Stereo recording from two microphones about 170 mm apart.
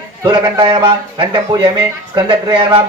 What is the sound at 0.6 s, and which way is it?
A man's voice, 30° right (ahead or behind).